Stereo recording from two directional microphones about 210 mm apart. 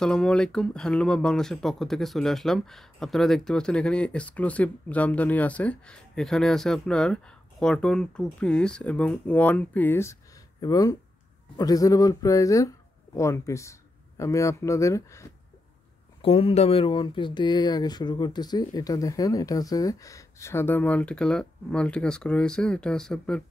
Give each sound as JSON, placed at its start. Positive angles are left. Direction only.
{"t": 0.0, "sound": "speech", "side_deg": 5}
{"t": 16.2, "sound": "speech", "side_deg": 25}